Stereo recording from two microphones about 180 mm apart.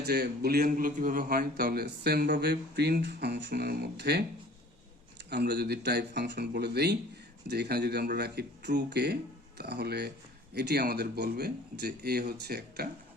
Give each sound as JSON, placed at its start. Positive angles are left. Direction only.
{"t": 0.0, "sound": "a man's voice", "side_deg": -60}